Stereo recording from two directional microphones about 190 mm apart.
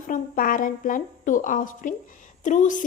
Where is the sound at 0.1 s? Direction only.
45° left (ahead or behind).